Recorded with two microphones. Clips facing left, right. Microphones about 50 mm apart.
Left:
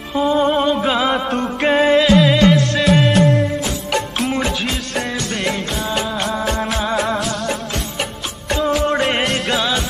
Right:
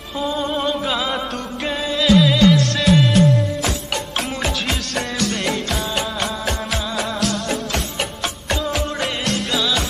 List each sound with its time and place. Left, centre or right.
0.1 s music: left
0.6 s a sound: centre
0.8 s music: left
1.6 s music: left
2.0 s music: centre
5.3 s music: centre
6.2 s music of bollywood: left
8.5 s music: left
9.3 s music: left